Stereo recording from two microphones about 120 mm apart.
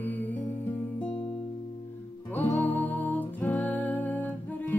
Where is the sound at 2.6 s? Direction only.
15° left (ahead or behind).